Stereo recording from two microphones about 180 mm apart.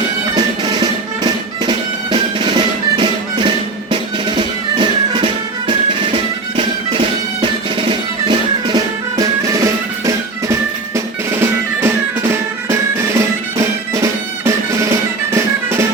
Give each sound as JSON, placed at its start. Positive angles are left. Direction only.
{"t": 0.3, "sound": "music", "side_deg": -20}
{"t": 7.4, "sound": "music", "side_deg": -25}